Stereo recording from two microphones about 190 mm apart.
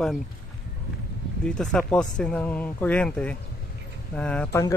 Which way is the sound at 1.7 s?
5° left (ahead or behind).